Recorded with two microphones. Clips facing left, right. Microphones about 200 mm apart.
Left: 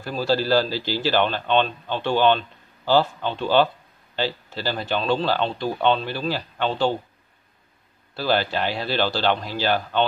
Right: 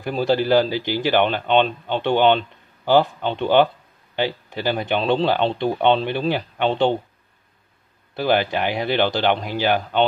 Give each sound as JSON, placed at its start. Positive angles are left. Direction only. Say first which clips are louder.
{"t": 0.0, "sound": "speech", "louder": "right 3 dB", "side_deg": -20}
{"t": 8.1, "sound": "speech", "louder": "right 3 dB", "side_deg": -15}